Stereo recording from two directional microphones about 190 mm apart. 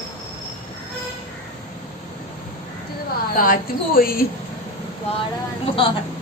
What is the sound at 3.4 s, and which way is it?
Speech, 50° left (ahead or behind).